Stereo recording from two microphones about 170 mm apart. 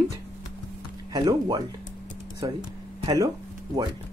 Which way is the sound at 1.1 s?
25° right (ahead or behind).